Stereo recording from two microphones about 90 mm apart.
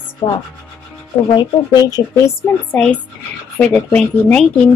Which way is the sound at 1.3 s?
50° left (ahead or behind).